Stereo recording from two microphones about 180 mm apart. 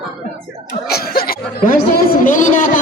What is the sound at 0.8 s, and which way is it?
Speech, 60° left (ahead or behind).